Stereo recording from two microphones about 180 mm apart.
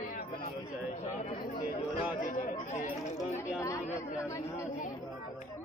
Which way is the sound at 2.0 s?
45° left (ahead or behind).